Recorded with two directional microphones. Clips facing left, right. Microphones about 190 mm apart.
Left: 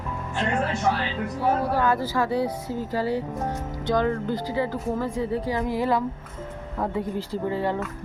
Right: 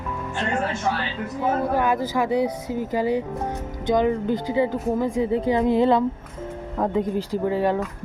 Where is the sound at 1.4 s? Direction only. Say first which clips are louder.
Right 1 dB; 15° right (ahead or behind).